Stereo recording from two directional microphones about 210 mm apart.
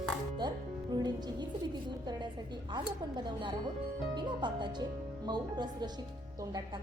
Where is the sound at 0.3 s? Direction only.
20° right (ahead or behind).